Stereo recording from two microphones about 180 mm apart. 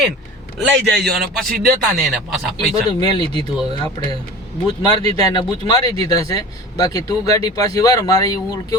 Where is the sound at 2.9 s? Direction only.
25° left (ahead or behind).